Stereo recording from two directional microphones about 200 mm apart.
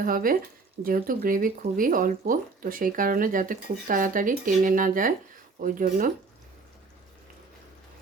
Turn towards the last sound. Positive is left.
turn(degrees=-45)  # may be behind; listen again after turning